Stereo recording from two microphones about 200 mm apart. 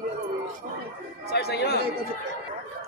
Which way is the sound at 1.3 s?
55° left (ahead or behind).